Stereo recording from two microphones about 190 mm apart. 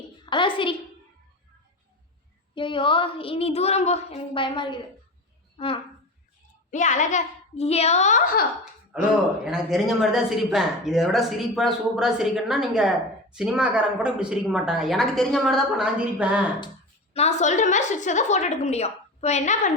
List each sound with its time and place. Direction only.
0.3 s a woman's voice: 25° left (ahead or behind)
2.6 s a woman's voice: 25° left (ahead or behind)
6.7 s a woman's voice: 40° left (ahead or behind)
8.9 s speech: 5° right (ahead or behind)
17.2 s a woman's voice: 40° left (ahead or behind)